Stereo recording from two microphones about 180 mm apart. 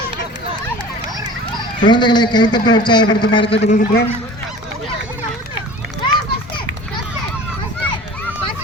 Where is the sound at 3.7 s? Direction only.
60° left (ahead or behind).